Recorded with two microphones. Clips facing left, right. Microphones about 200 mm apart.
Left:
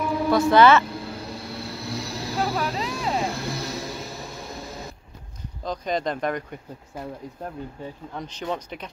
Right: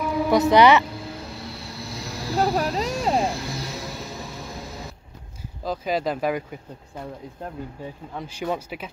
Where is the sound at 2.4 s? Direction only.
40° right (ahead or behind).